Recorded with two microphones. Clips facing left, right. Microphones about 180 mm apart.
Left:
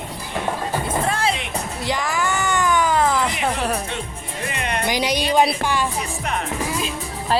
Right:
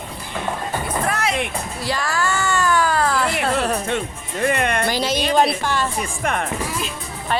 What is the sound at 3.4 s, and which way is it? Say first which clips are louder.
Music: right 2 dB; 15° left (ahead or behind).